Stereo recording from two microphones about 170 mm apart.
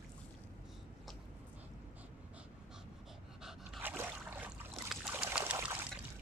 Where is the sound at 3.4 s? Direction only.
5° right (ahead or behind).